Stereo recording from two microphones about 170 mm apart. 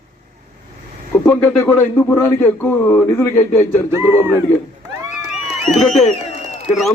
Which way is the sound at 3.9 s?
15° right (ahead or behind).